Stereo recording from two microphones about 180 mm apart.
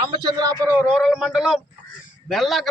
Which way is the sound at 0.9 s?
Centre (ahead or behind).